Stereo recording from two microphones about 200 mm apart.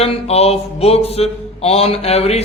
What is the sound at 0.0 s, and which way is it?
A man's voice, 30° left (ahead or behind).